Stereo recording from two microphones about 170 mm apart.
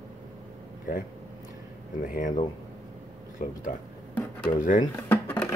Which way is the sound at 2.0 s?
55° left (ahead or behind).